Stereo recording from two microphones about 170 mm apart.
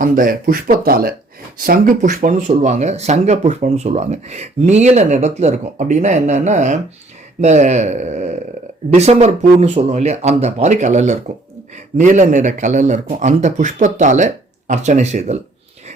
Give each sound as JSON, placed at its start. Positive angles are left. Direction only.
{"t": 0.0, "sound": "speech", "side_deg": -55}